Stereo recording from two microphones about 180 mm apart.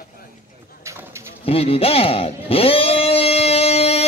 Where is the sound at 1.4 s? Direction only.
30° left (ahead or behind).